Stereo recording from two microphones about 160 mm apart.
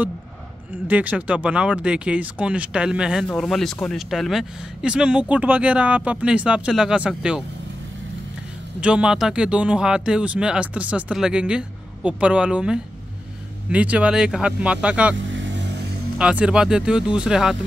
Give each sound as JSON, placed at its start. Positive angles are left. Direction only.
{"t": 0.8, "sound": "speech", "side_deg": -10}
{"t": 8.8, "sound": "speech", "side_deg": -5}
{"t": 16.2, "sound": "speech", "side_deg": -5}